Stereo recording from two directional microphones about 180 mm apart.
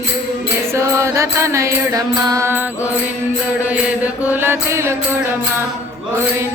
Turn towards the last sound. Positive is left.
turn(degrees=-15)  # may be behind; listen again after turning